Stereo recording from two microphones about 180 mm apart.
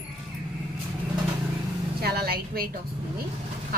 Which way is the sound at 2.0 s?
60° right (ahead or behind).